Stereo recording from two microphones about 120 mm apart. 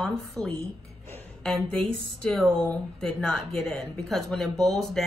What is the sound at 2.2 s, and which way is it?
Speech, 5° left (ahead or behind).